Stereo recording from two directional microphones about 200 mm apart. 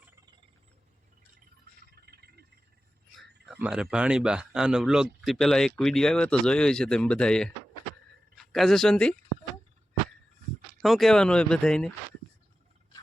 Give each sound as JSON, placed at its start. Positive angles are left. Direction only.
{"t": 2.0, "sound": "a sound", "side_deg": -50}
{"t": 3.5, "sound": "speech", "side_deg": -5}
{"t": 8.5, "sound": "speech", "side_deg": 0}
{"t": 10.8, "sound": "speech", "side_deg": 0}